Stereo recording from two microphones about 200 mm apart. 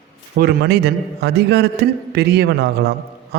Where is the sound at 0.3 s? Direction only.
50° right (ahead or behind).